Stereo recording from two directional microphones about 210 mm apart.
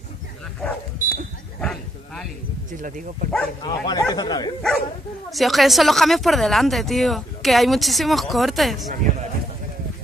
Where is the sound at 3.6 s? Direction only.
20° left (ahead or behind).